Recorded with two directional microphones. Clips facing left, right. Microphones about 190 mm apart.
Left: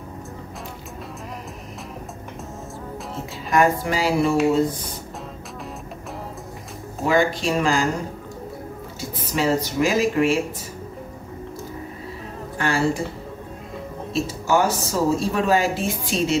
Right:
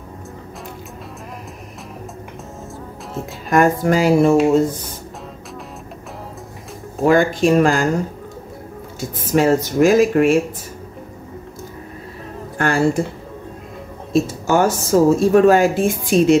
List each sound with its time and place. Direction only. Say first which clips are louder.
3.4 s speech: right 4 dB; 50° right (ahead or behind)
7.1 s speech: right 6 dB; 50° right (ahead or behind)
9.1 s speech: right 6 dB; 50° right (ahead or behind)
12.5 s speech: right 5 dB; 50° right (ahead or behind)
14.1 s speech: right 5 dB; 50° right (ahead or behind)